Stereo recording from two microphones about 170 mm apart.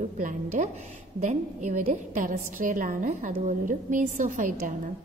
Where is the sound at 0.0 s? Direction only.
50° right (ahead or behind).